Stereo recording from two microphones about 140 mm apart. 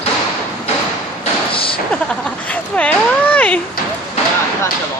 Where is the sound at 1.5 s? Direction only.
40° left (ahead or behind).